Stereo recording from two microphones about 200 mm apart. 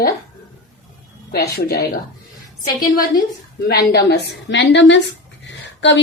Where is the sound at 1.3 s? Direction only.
50° left (ahead or behind).